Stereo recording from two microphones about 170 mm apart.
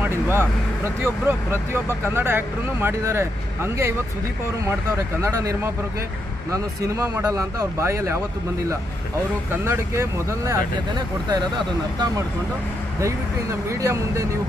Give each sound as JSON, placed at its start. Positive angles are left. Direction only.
{"t": 0.0, "sound": "vehicle", "side_deg": -15}
{"t": 1.0, "sound": "speech", "side_deg": -15}
{"t": 5.2, "sound": "speech", "side_deg": -20}
{"t": 9.5, "sound": "speech", "side_deg": -15}